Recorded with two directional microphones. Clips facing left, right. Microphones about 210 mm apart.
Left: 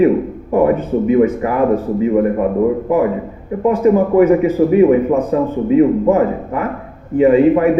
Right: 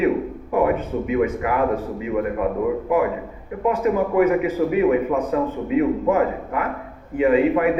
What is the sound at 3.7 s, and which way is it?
A man's voice, 30° left (ahead or behind).